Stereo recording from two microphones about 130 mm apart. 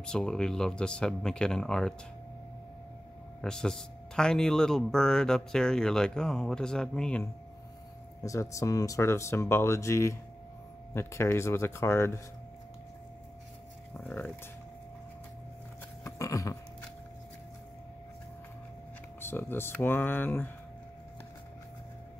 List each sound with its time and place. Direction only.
0.0 s speech: 5° left (ahead or behind)
3.3 s speech: 5° left (ahead or behind)
8.2 s speech: 25° left (ahead or behind)
14.1 s speech: 15° left (ahead or behind)
16.0 s a sound: 25° left (ahead or behind)
19.2 s speech: 15° left (ahead or behind)